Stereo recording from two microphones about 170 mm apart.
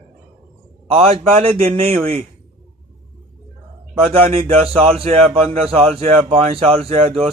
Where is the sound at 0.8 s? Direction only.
35° right (ahead or behind).